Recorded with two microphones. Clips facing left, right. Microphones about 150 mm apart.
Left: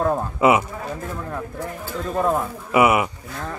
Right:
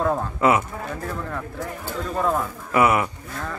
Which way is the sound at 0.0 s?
15° left (ahead or behind).